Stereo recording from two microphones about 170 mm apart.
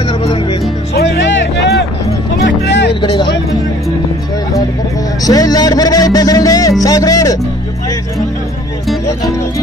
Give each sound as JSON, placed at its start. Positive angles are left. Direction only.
{"t": 0.2, "sound": "music", "side_deg": 30}
{"t": 0.9, "sound": "a sound", "side_deg": 90}
{"t": 2.4, "sound": "music", "side_deg": 90}
{"t": 3.0, "sound": "speech", "side_deg": 25}
{"t": 5.2, "sound": "speech", "side_deg": 20}
{"t": 6.8, "sound": "music", "side_deg": 20}